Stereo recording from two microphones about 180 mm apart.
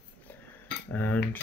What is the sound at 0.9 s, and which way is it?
Speech, 10° left (ahead or behind).